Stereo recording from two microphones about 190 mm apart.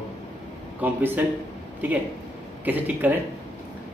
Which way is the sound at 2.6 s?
10° right (ahead or behind).